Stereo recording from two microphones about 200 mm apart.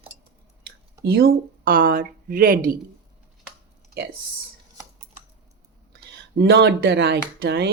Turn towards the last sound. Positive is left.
turn(degrees=-55)  # may be behind; listen again after turning